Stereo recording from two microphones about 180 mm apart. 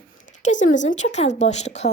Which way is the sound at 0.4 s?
45° left (ahead or behind).